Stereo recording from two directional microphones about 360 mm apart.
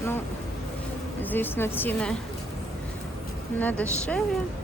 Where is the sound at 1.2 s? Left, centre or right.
Centre.